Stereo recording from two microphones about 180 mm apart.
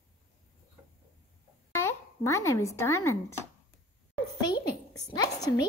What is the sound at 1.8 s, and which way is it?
A child's voice, 15° left (ahead or behind).